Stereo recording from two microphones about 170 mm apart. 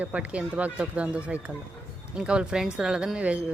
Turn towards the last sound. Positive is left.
turn(degrees=-5)  # may be behind; listen again after turning